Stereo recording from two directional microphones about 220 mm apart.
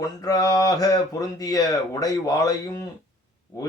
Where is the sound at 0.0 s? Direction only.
15° left (ahead or behind).